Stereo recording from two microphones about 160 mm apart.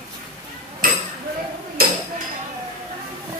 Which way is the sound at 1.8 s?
65° right (ahead or behind).